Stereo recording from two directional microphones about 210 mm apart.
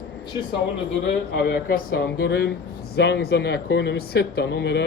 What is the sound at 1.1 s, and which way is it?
A man's voice, 45° left (ahead or behind).